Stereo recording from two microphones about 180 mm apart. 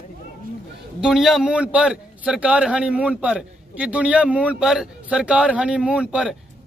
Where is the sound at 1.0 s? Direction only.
Centre (ahead or behind).